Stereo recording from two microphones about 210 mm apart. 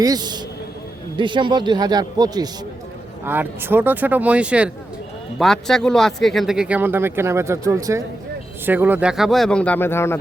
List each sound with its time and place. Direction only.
0.0 s a man's voice: 20° right (ahead or behind); by 10.2 s 10° left (ahead or behind)